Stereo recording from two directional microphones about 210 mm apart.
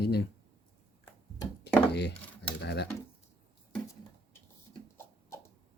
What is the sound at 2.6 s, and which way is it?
Speech, 50° left (ahead or behind).